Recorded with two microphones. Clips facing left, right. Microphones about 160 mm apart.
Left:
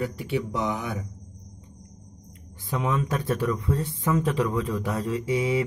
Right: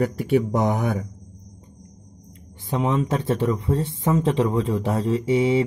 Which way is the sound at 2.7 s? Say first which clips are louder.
Right 4 dB; 25° right (ahead or behind).